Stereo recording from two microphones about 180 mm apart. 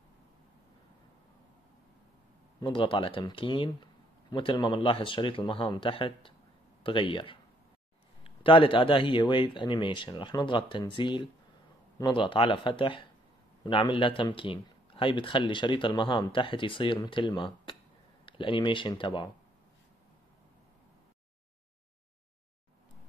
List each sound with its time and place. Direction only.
2.6 s speech: 30° left (ahead or behind)